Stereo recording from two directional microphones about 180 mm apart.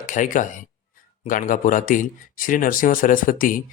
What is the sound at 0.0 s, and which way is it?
Speech, 45° left (ahead or behind).